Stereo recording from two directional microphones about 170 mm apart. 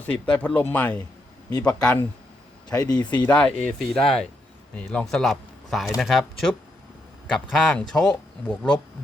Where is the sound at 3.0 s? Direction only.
25° left (ahead or behind).